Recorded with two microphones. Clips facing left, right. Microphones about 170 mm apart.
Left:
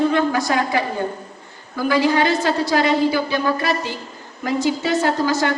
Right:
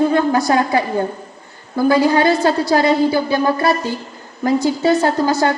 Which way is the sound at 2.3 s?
35° right (ahead or behind).